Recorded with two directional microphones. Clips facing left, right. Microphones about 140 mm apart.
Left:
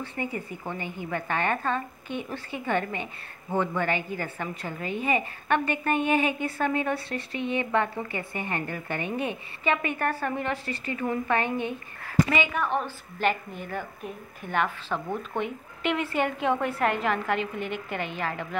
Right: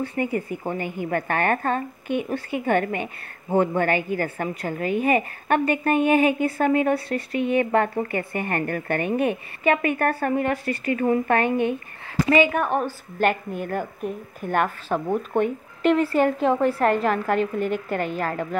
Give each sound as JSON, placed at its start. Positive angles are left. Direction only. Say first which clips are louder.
{"t": 0.0, "sound": "speech", "louder": "right 7 dB", "side_deg": -45}
{"t": 2.1, "sound": "speech", "louder": "right 8 dB", "side_deg": -10}
{"t": 2.6, "sound": "a woman's voice", "louder": "right 5 dB", "side_deg": -50}